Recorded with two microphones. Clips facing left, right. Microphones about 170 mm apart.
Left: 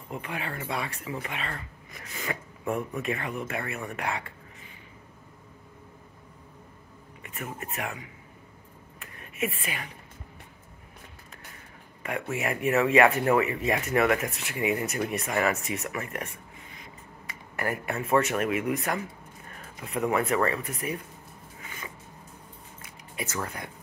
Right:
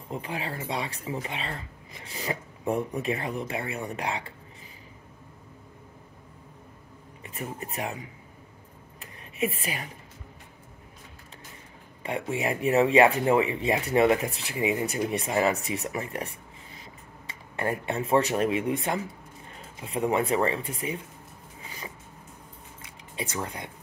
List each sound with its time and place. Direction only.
0.1 s speech: 30° right (ahead or behind)
7.2 s speech: 35° right (ahead or behind)
9.6 s speech: 40° right (ahead or behind)
12.0 s speech: 30° right (ahead or behind)
22.8 s a sound: 25° right (ahead or behind)